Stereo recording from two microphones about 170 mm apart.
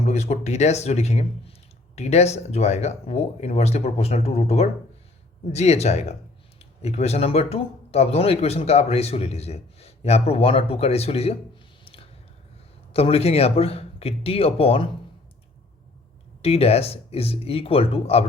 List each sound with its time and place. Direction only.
0.0 s speech: 40° left (ahead or behind)
12.9 s speech: 35° left (ahead or behind)
16.4 s speech: 35° left (ahead or behind)